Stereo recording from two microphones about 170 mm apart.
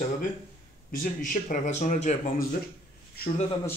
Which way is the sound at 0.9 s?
55° left (ahead or behind).